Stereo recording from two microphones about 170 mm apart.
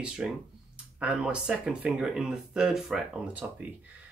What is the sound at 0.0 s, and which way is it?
Speech, 5° right (ahead or behind).